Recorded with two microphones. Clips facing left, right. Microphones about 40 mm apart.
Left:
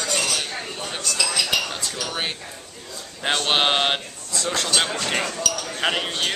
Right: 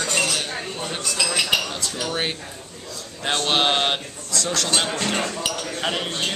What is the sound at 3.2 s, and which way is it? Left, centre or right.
A man's voice, centre.